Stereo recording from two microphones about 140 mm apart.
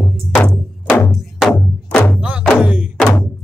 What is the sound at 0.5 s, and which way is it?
Music, 10° left (ahead or behind).